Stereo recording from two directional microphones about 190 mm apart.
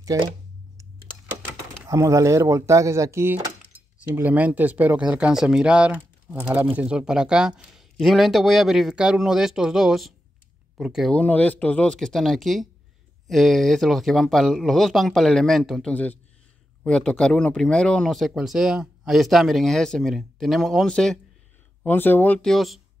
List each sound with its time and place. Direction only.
0.1 s speech: 20° right (ahead or behind)
1.9 s speech: 15° right (ahead or behind); by 22.8 s centre (ahead or behind)